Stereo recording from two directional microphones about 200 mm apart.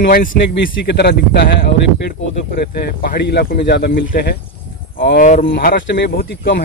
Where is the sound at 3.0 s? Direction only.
50° left (ahead or behind).